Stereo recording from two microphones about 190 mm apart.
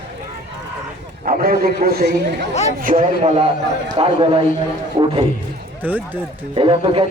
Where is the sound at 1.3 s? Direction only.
50° right (ahead or behind).